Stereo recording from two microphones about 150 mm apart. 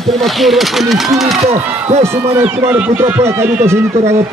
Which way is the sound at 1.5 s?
45° right (ahead or behind).